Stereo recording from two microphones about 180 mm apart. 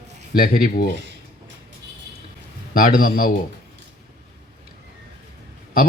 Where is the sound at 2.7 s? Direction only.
55° left (ahead or behind).